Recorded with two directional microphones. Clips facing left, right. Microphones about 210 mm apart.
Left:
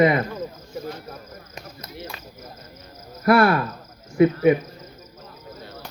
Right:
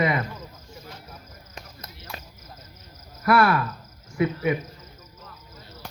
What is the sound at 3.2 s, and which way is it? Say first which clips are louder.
Speech: left 3 dB; 30° left (ahead or behind).